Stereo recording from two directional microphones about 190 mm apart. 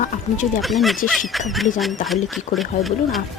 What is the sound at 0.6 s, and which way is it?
Speech, centre (ahead or behind).